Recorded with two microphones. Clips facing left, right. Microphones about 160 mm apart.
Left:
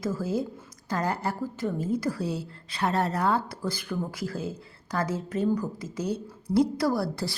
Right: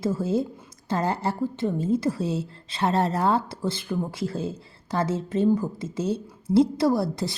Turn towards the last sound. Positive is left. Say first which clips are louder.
# right 4 dB
turn(degrees=-20)  # may be behind; listen again after turning